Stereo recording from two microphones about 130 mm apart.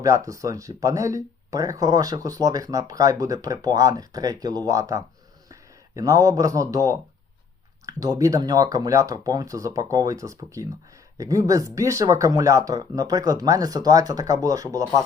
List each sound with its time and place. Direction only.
0.0 s speech: 25° right (ahead or behind)